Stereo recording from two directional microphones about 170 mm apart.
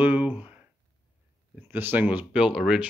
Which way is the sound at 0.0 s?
10° right (ahead or behind).